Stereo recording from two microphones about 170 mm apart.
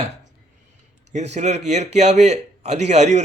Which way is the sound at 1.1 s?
45° right (ahead or behind).